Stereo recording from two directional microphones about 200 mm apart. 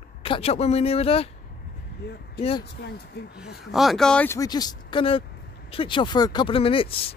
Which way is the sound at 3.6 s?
Centre (ahead or behind).